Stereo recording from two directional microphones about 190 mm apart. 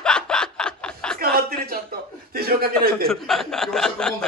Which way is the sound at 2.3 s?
55° right (ahead or behind).